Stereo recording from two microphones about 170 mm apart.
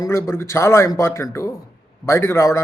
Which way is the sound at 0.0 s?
15° left (ahead or behind).